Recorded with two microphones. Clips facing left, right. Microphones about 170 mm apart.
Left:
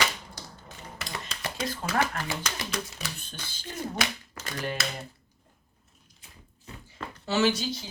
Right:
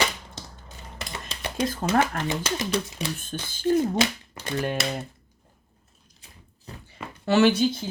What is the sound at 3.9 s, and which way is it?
Speech, 25° right (ahead or behind).